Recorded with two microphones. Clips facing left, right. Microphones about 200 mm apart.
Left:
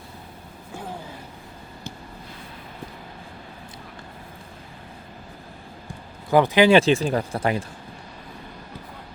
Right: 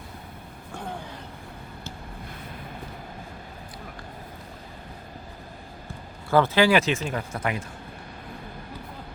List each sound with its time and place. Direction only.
6.3 s speech: 15° left (ahead or behind)
6.7 s speech: 30° left (ahead or behind)